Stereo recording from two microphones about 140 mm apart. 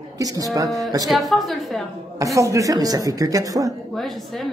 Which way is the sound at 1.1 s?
Centre (ahead or behind).